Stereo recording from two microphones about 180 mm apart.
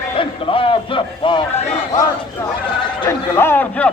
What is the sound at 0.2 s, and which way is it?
A man's voice, 30° left (ahead or behind).